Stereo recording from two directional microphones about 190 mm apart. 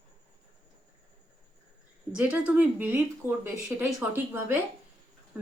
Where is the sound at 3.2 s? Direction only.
15° left (ahead or behind).